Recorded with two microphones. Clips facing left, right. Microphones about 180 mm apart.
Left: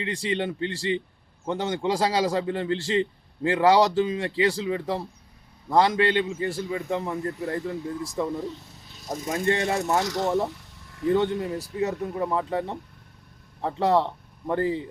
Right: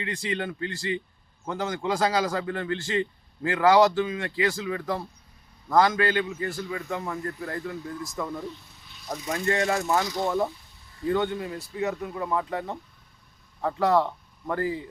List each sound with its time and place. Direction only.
0.0 s a man's voice: 30° left (ahead or behind)
8.9 s a sound: 40° left (ahead or behind)
9.3 s a man's voice: 30° left (ahead or behind)
10.0 s speech: 75° left (ahead or behind)
10.5 s a sound: 75° left (ahead or behind)
11.1 s speech: 30° left (ahead or behind)